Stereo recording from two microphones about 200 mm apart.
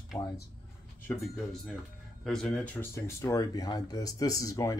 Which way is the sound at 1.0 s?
Centre (ahead or behind).